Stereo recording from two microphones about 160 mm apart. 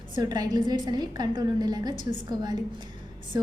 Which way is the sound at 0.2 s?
25° right (ahead or behind).